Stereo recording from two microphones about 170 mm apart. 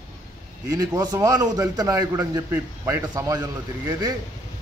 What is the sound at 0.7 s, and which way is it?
A man's voice, 20° right (ahead or behind).